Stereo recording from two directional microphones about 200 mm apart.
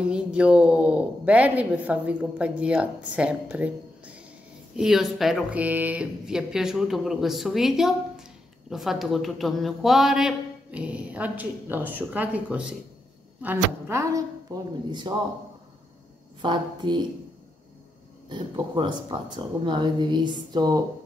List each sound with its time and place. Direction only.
0.0 s a woman's voice: 5° right (ahead or behind)
16.3 s speech: 25° right (ahead or behind)
18.3 s speech: 25° right (ahead or behind)